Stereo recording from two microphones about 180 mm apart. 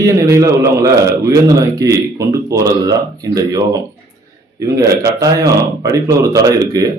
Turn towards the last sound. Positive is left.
turn(degrees=-20)  # may be behind; listen again after turning